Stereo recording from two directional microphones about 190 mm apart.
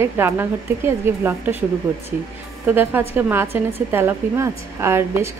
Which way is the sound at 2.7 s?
10° right (ahead or behind).